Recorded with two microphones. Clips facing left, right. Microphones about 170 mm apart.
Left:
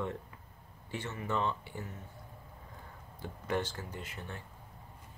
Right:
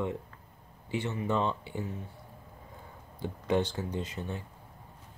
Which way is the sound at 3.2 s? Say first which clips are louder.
Right 6 dB; 20° right (ahead or behind).